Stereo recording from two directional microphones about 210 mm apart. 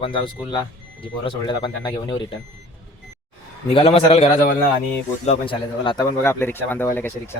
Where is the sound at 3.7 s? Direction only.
25° left (ahead or behind).